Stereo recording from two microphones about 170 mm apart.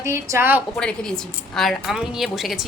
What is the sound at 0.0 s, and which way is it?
Speech, 15° right (ahead or behind).